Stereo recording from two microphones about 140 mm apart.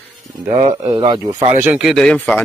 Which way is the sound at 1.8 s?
Centre (ahead or behind).